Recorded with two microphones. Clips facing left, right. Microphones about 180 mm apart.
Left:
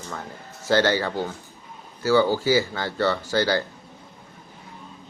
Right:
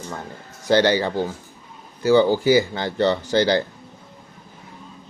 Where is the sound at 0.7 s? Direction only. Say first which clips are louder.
Right 3 dB; 15° right (ahead or behind).